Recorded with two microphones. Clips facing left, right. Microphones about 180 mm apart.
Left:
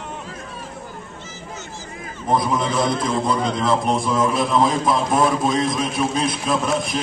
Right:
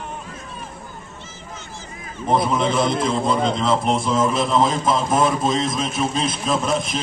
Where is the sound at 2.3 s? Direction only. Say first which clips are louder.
Right 1 dB; 25° right (ahead or behind).